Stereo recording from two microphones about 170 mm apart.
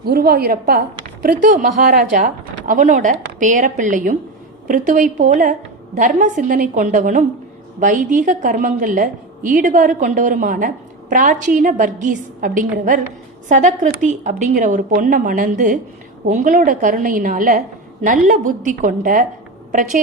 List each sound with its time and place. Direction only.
0.0 s a woman's voice: 60° right (ahead or behind)